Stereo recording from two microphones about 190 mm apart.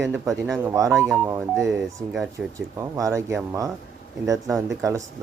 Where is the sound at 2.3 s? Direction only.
15° right (ahead or behind).